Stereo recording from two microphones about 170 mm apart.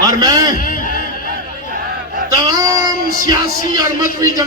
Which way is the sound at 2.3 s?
20° right (ahead or behind).